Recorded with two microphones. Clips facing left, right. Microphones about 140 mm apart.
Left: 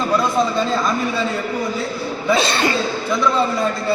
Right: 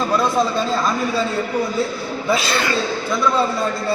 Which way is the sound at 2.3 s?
30° left (ahead or behind).